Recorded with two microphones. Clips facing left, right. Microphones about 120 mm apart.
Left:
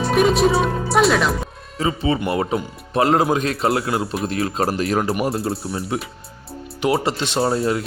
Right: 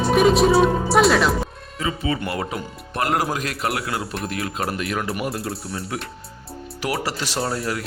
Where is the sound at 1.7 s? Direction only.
30° left (ahead or behind).